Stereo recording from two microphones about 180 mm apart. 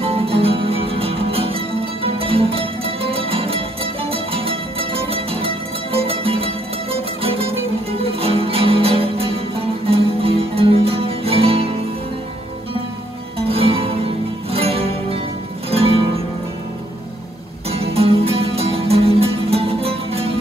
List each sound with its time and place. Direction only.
0.0 s music: 30° right (ahead or behind)
13.4 s music: 35° right (ahead or behind)
17.6 s music: 35° right (ahead or behind)